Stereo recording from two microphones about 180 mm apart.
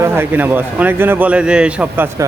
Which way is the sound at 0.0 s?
15° right (ahead or behind).